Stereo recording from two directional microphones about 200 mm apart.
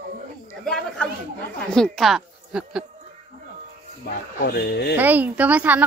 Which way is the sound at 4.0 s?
50° left (ahead or behind).